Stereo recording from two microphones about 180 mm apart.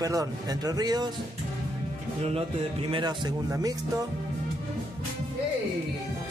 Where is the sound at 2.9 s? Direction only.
25° right (ahead or behind).